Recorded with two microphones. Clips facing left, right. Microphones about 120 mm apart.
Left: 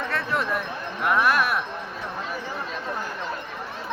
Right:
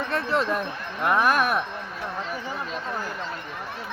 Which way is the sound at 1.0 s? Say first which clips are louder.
Even; 20° right (ahead or behind).